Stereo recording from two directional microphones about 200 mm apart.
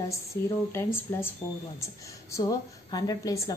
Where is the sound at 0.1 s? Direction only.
15° left (ahead or behind).